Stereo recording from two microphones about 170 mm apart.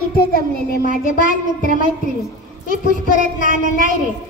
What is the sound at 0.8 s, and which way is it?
A child's voice, 50° left (ahead or behind).